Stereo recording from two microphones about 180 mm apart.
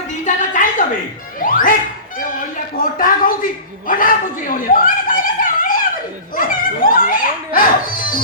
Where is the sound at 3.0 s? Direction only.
50° left (ahead or behind).